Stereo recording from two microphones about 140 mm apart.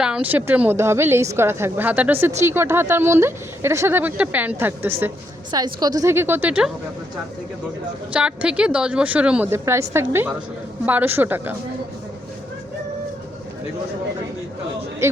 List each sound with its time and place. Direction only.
0.0 s speech: 10° right (ahead or behind)
5.5 s a woman's voice: 30° right (ahead or behind); by 6.7 s 10° right (ahead or behind)
8.1 s speech: 5° right (ahead or behind)
15.0 s a woman's voice: 20° right (ahead or behind)